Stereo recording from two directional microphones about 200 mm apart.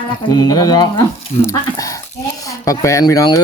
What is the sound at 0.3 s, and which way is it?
Speech, 20° left (ahead or behind).